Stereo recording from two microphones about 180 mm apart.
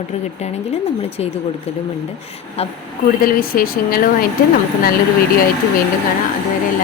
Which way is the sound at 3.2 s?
55° left (ahead or behind).